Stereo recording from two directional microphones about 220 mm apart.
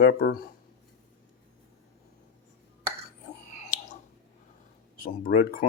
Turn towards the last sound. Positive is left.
turn(degrees=40)  # may be behind; listen again after turning